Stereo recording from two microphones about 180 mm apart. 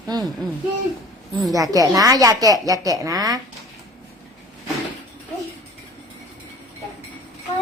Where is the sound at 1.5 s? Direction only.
20° right (ahead or behind).